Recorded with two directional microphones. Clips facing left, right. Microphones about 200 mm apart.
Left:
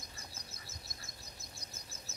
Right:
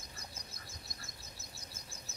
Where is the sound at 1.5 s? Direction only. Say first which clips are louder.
Even; 10° right (ahead or behind).